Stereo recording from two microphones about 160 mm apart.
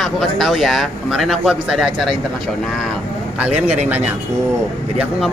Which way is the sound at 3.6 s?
45° right (ahead or behind).